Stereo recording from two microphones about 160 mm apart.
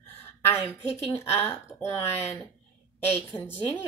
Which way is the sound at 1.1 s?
15° left (ahead or behind).